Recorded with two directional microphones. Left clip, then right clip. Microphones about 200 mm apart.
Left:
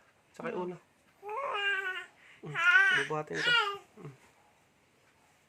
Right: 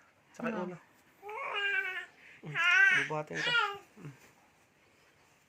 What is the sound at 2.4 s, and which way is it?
Speech, 15° left (ahead or behind).